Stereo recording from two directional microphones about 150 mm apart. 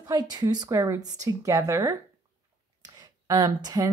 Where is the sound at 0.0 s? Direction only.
25° right (ahead or behind).